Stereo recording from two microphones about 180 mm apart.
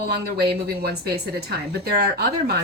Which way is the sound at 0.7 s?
60° right (ahead or behind).